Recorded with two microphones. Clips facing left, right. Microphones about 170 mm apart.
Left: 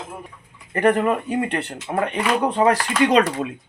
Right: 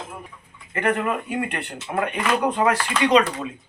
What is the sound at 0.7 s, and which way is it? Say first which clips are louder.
Speech: left 5 dB; 35° left (ahead or behind).